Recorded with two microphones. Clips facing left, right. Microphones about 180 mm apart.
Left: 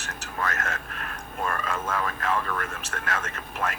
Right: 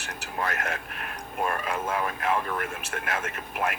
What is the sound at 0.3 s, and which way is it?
Speech, 15° right (ahead or behind).